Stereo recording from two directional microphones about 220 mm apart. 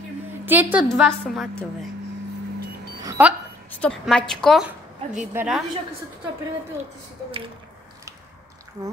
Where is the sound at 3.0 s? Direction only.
15° right (ahead or behind).